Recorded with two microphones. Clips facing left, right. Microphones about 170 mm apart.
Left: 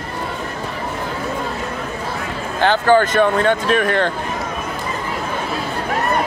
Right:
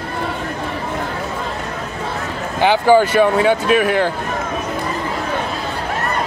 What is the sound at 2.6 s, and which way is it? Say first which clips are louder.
Speech: right 2 dB; 10° right (ahead or behind).